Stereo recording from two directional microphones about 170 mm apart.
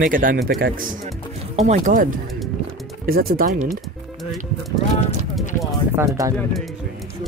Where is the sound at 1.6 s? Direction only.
45° right (ahead or behind).